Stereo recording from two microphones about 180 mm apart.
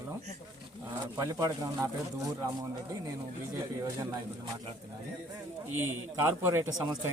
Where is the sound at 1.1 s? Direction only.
20° right (ahead or behind).